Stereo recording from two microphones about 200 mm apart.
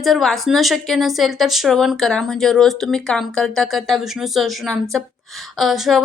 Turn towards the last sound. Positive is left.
turn(degrees=0)  # may be behind; listen again after turning